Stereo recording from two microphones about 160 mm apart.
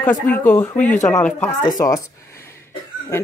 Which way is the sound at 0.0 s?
10° left (ahead or behind).